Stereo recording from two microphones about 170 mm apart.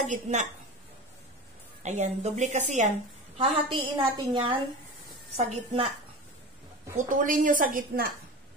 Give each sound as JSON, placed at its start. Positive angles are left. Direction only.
{"t": 0.0, "sound": "a woman's voice", "side_deg": -45}
{"t": 1.8, "sound": "a woman's voice", "side_deg": -40}
{"t": 3.3, "sound": "a woman's voice", "side_deg": -30}
{"t": 5.4, "sound": "a woman's voice", "side_deg": -40}
{"t": 7.0, "sound": "a woman's voice", "side_deg": -50}